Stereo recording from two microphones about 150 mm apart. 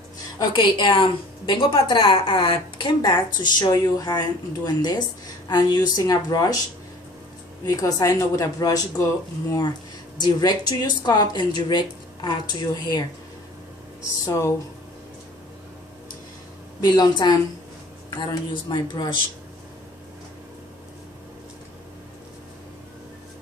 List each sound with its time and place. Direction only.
0.4 s a woman's voice: 30° left (ahead or behind)
7.6 s speech: 20° left (ahead or behind)
14.2 s speech: 20° left (ahead or behind)
16.8 s a woman's voice: 25° left (ahead or behind)